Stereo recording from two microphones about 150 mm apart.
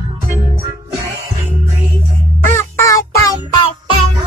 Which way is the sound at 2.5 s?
20° left (ahead or behind).